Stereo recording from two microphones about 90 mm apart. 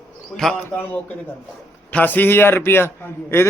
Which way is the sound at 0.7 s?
20° left (ahead or behind).